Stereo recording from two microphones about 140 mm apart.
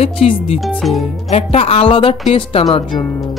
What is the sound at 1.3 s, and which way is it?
A woman's voice, 45° left (ahead or behind).